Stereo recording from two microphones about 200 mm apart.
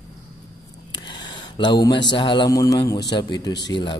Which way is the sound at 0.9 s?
20° left (ahead or behind).